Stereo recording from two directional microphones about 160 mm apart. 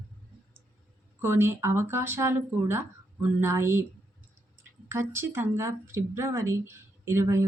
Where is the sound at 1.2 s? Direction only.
15° right (ahead or behind).